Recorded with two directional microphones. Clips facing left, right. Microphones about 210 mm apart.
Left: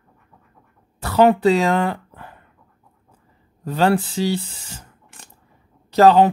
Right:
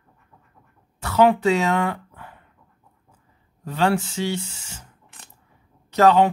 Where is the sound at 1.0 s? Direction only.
35° left (ahead or behind).